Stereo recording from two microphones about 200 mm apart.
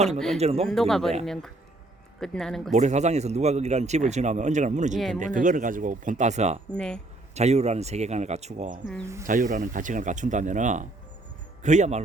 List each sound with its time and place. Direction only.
0.3 s speech: 30° right (ahead or behind)
0.7 s speech: centre (ahead or behind)
2.7 s speech: 35° right (ahead or behind)
4.9 s speech: centre (ahead or behind)
5.2 s speech: 40° right (ahead or behind)
6.7 s speech: 5° left (ahead or behind)
7.3 s speech: 35° right (ahead or behind)